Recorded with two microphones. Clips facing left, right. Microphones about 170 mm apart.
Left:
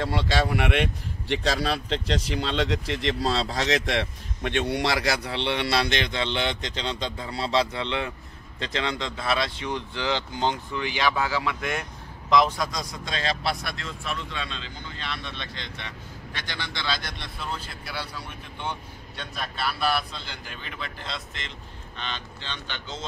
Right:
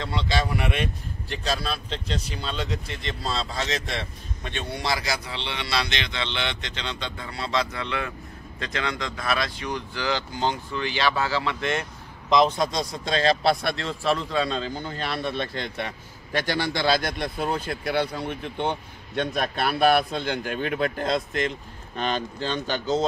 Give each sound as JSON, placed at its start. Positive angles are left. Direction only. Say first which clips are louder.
{"t": 0.0, "sound": "speech", "louder": "left 2 dB", "side_deg": 60}
{"t": 1.3, "sound": "speech", "louder": "left 3 dB", "side_deg": 90}
{"t": 12.3, "sound": "speech", "louder": "right 2 dB", "side_deg": -20}